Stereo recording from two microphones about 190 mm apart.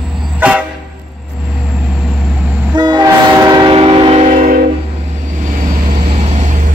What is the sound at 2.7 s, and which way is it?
Train, 25° right (ahead or behind).